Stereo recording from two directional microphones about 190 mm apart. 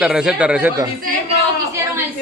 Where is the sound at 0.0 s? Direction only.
5° right (ahead or behind).